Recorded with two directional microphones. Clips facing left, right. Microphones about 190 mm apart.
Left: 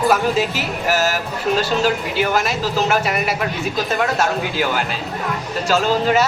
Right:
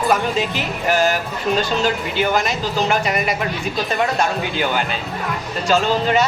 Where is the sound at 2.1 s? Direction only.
Centre (ahead or behind).